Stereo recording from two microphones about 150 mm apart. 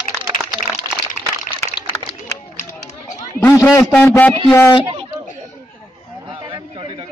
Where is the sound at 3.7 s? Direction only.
20° left (ahead or behind).